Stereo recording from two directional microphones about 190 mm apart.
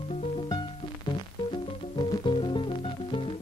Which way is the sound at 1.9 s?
25° left (ahead or behind).